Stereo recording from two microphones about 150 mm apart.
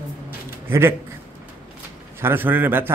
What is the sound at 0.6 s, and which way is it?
Speech, 15° right (ahead or behind).